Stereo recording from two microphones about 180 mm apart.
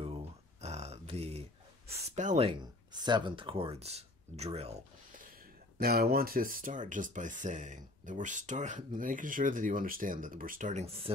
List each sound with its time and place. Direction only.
0.0 s a sound: 35° right (ahead or behind)
2.0 s speech: 40° right (ahead or behind)
5.8 s speech: 60° right (ahead or behind); by 11.0 s 40° right (ahead or behind)